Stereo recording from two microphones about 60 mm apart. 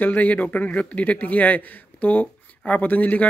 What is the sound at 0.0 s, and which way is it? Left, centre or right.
Speech, left.